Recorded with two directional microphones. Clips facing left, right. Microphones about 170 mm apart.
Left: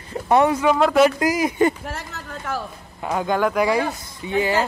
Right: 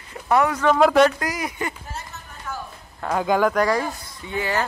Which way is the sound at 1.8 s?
90° left.